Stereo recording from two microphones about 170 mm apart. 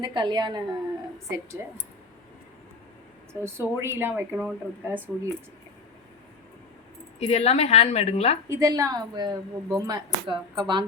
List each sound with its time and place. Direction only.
0.0 s speech: 25° right (ahead or behind)
1.6 s speech: 15° right (ahead or behind)
3.4 s speech: 15° right (ahead or behind)
7.2 s a woman's voice: 40° left (ahead or behind)
8.4 s speech: 20° right (ahead or behind)